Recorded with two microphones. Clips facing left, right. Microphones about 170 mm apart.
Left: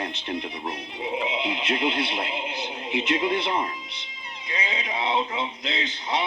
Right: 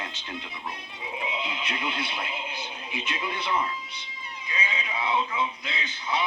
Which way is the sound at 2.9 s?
70° left (ahead or behind).